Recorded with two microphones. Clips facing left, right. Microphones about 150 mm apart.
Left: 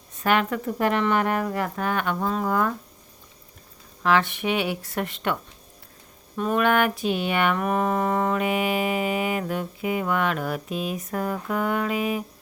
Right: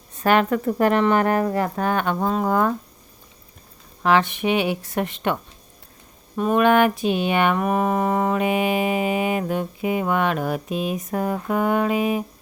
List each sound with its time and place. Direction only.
0.2 s speech: 40° right (ahead or behind)
4.0 s mantra: 20° right (ahead or behind)